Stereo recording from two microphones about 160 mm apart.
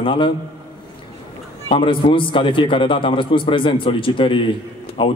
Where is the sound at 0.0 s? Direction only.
30° left (ahead or behind).